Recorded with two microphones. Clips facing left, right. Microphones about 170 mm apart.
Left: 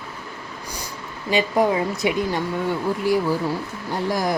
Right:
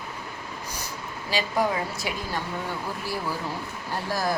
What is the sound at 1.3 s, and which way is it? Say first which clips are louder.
Speech: left 6 dB; 55° left (ahead or behind).